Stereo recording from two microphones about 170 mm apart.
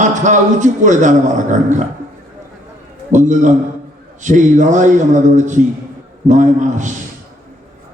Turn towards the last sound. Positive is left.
turn(degrees=-45)  # may be behind; listen again after turning